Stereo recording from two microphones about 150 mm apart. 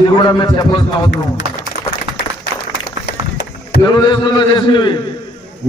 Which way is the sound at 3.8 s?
30° left (ahead or behind).